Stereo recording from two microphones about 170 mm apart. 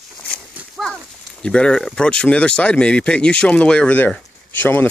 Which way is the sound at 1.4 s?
5° left (ahead or behind).